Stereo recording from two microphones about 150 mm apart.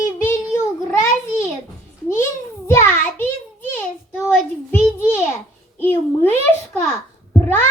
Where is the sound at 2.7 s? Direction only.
15° left (ahead or behind).